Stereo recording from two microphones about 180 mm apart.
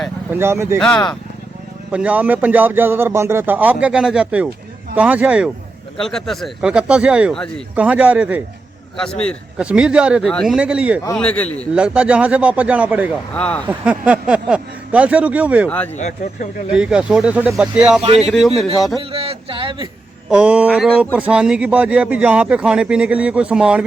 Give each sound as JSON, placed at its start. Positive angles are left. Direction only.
{"t": 0.3, "sound": "speech", "side_deg": -15}
{"t": 0.8, "sound": "speech", "side_deg": 5}
{"t": 1.9, "sound": "speech", "side_deg": -5}
{"t": 9.6, "sound": "speech", "side_deg": -5}
{"t": 11.2, "sound": "a man's voice", "side_deg": 5}
{"t": 11.7, "sound": "speech", "side_deg": -5}
{"t": 13.3, "sound": "a man's voice", "side_deg": 5}
{"t": 13.7, "sound": "speech", "side_deg": -5}
{"t": 16.0, "sound": "speech", "side_deg": 40}
{"t": 16.7, "sound": "speech", "side_deg": -5}
{"t": 18.0, "sound": "speech", "side_deg": -35}
{"t": 18.3, "sound": "speech", "side_deg": 0}
{"t": 19.1, "sound": "speech", "side_deg": -30}
{"t": 20.3, "sound": "speech", "side_deg": -5}